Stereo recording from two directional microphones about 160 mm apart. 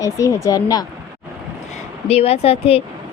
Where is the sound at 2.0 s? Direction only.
40° left (ahead or behind).